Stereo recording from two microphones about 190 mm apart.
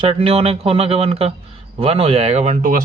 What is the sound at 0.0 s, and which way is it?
A man's voice, 30° right (ahead or behind).